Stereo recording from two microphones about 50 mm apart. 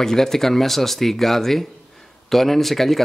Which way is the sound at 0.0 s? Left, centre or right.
Centre.